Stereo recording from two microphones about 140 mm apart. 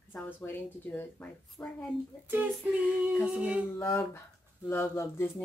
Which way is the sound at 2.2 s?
15° right (ahead or behind).